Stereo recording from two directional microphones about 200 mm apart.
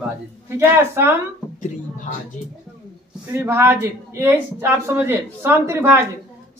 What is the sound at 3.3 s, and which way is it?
A woman's voice, 10° right (ahead or behind).